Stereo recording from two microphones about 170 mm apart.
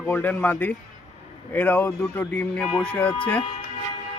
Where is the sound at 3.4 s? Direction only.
35° left (ahead or behind).